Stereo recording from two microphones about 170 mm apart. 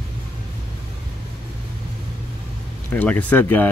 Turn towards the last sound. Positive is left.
turn(degrees=10)  # may be behind; listen again after turning